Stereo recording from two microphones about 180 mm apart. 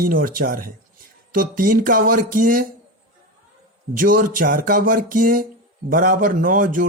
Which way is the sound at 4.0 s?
50° right (ahead or behind).